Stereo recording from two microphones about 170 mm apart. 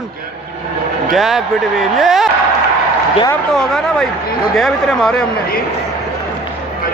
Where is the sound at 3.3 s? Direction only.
5° left (ahead or behind).